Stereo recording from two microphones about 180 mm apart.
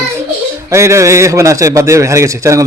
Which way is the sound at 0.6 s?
15° right (ahead or behind).